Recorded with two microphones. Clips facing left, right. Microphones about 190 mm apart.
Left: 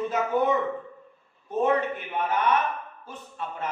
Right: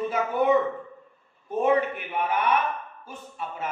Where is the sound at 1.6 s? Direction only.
10° right (ahead or behind).